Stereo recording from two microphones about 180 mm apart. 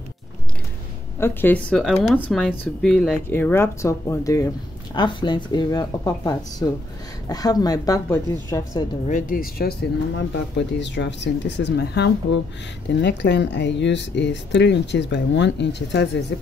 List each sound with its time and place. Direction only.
1.2 s speech: 10° left (ahead or behind)
3.3 s speech: 15° left (ahead or behind)
9.0 s speech: 45° left (ahead or behind); by 16.3 s 70° left (ahead or behind)